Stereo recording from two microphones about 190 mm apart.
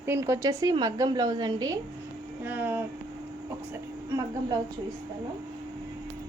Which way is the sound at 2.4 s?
10° right (ahead or behind).